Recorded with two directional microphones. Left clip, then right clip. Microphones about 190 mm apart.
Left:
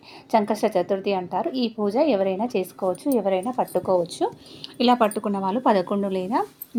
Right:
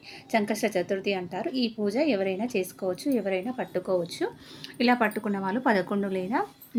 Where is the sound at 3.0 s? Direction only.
55° left (ahead or behind).